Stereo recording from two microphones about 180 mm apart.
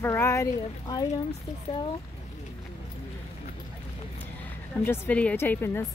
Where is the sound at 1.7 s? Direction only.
30° left (ahead or behind).